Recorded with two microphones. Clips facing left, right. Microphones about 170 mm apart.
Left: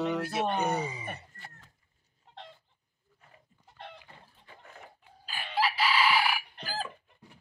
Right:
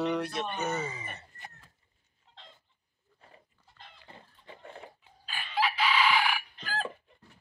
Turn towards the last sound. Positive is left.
turn(degrees=5)  # may be behind; listen again after turning